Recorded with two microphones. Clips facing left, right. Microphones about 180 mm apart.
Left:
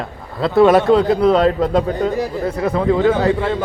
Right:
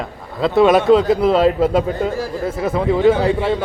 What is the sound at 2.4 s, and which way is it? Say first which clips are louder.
Speech: left 1 dB; 5° right (ahead or behind).